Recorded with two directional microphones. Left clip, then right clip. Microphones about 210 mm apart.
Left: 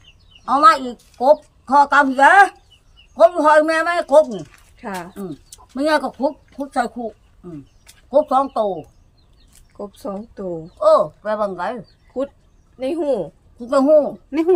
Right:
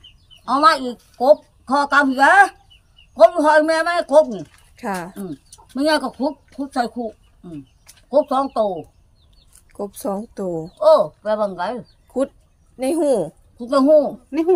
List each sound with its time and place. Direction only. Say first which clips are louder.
0.4 s a woman's voice: left 2 dB; centre (ahead or behind)
4.8 s speech: right 5 dB; 55° right (ahead or behind)
5.7 s a woman's voice: left 1 dB; centre (ahead or behind)
9.7 s a woman's voice: right 4 dB; 50° right (ahead or behind)
10.8 s a woman's voice: even; 5° left (ahead or behind)
12.8 s a woman's voice: right 2 dB; 50° right (ahead or behind)
13.6 s a woman's voice: even; 5° left (ahead or behind)
14.3 s speech: left 1 dB; 15° left (ahead or behind)